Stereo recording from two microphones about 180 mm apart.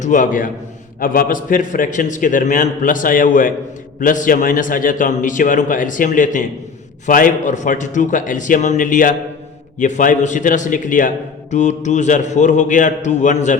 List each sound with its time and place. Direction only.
0.0 s a man's voice: 45° left (ahead or behind)